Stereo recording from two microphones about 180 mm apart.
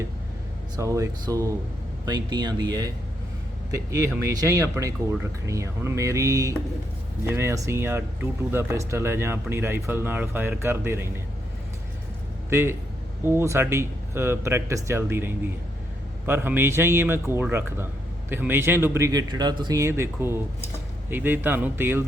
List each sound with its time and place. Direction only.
0.8 s speech: 15° right (ahead or behind)
12.5 s a man's voice: 15° right (ahead or behind)